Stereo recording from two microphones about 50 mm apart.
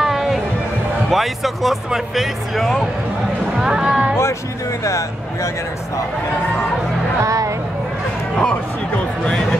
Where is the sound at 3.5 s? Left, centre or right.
Centre.